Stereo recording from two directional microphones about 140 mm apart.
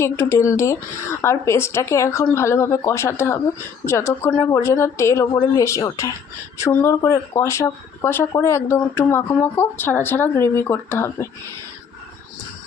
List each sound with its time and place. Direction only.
0.0 s speech: 20° left (ahead or behind)
5.3 s speech: 30° left (ahead or behind)
5.6 s speech: 20° left (ahead or behind)